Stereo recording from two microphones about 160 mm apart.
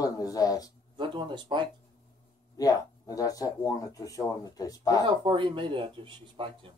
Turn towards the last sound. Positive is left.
turn(degrees=-35)  # may be behind; listen again after turning